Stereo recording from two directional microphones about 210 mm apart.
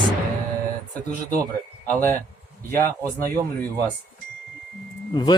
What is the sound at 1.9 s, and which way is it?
Speech, 10° left (ahead or behind).